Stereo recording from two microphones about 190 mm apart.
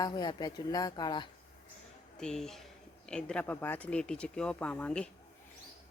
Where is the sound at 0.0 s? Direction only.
20° left (ahead or behind).